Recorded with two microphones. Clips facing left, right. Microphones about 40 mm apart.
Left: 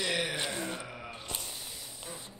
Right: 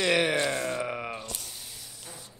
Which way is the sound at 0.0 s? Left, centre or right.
Right.